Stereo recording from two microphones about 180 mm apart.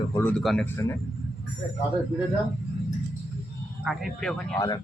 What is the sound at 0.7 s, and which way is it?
Speech, 15° left (ahead or behind).